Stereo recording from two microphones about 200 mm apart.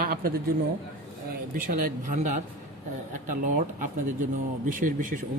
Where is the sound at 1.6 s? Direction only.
45° right (ahead or behind).